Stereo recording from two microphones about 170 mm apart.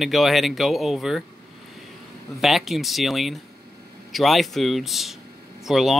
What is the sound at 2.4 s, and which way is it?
Speech, centre (ahead or behind).